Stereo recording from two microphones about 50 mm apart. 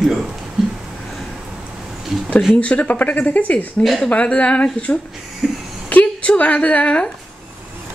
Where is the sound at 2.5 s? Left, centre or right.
Left.